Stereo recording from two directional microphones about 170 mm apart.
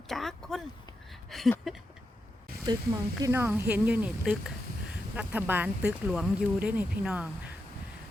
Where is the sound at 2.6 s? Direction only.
20° right (ahead or behind).